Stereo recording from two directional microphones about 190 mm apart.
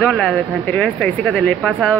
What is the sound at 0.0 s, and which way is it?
Speech, 5° left (ahead or behind).